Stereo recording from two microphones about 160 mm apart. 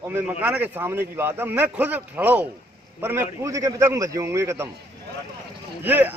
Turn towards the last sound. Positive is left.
turn(degrees=-10)  # may be behind; listen again after turning